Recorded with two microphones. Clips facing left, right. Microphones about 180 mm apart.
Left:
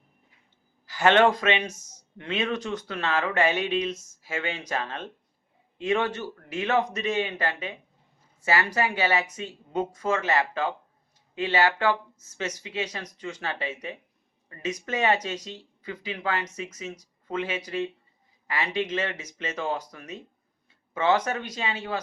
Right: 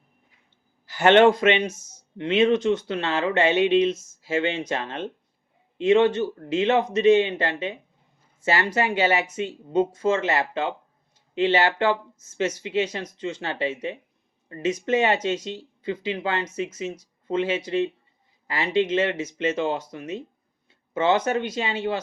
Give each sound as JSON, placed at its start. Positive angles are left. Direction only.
{"t": 0.9, "sound": "speech", "side_deg": -25}